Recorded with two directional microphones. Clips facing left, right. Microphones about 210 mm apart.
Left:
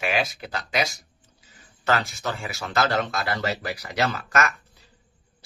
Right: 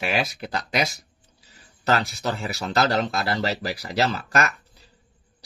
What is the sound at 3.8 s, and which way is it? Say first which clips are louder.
Speech: right 2 dB; 30° right (ahead or behind).